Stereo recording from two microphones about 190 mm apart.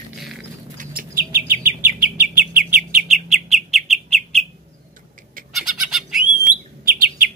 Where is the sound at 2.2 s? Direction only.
50° right (ahead or behind).